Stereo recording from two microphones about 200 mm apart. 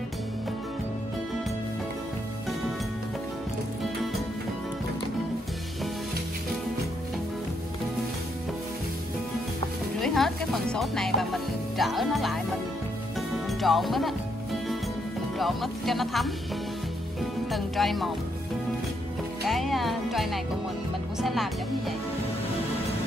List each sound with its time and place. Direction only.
9.9 s speech: centre (ahead or behind)
13.5 s music: centre (ahead or behind)
15.3 s speech: centre (ahead or behind)
17.5 s speech: centre (ahead or behind)
19.4 s music: centre (ahead or behind)
21.2 s speech: centre (ahead or behind)